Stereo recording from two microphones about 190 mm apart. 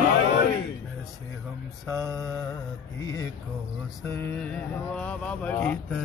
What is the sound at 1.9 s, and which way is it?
Mantra, 15° right (ahead or behind).